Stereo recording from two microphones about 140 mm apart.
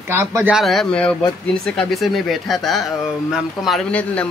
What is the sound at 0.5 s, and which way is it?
Speech, centre (ahead or behind).